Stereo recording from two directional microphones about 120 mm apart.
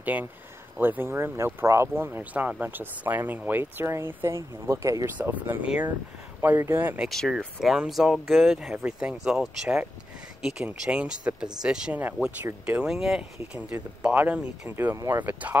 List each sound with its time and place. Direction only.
0.0 s speech: 15° right (ahead or behind)
7.1 s speech: centre (ahead or behind); by 15.5 s 15° right (ahead or behind)